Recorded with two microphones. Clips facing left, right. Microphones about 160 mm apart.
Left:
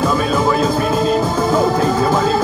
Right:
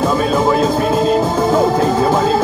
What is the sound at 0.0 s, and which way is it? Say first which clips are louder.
Music: right 2 dB; 25° right (ahead or behind).